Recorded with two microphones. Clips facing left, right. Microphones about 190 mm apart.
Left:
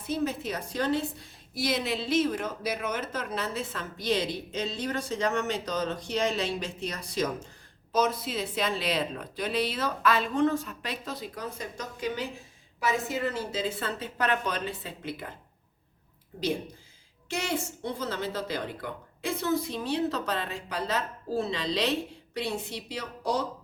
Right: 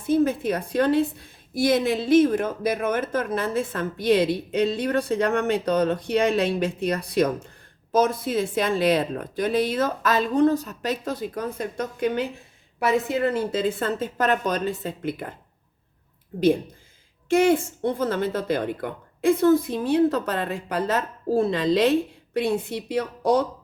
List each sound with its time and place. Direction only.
0.0 s a woman's voice: 50° right (ahead or behind)
17.2 s a woman's voice: 50° right (ahead or behind)